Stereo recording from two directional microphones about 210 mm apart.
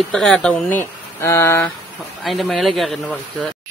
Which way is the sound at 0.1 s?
Centre (ahead or behind).